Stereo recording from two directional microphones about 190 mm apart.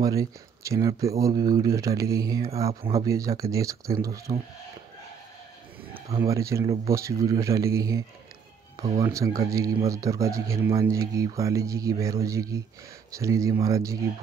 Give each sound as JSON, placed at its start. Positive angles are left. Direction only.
{"t": 0.0, "sound": "speech", "side_deg": -20}
{"t": 6.0, "sound": "speech", "side_deg": -15}
{"t": 9.0, "sound": "speech", "side_deg": -15}